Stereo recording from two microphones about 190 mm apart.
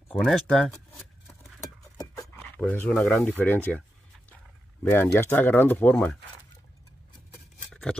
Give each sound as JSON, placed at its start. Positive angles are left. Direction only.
{"t": 0.1, "sound": "speech", "side_deg": 0}
{"t": 2.0, "sound": "a sound", "side_deg": 20}
{"t": 2.6, "sound": "speech", "side_deg": 10}
{"t": 4.8, "sound": "speech", "side_deg": 15}
{"t": 7.7, "sound": "scissors", "side_deg": 5}